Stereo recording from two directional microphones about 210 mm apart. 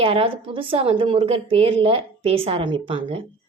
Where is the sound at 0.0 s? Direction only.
25° right (ahead or behind).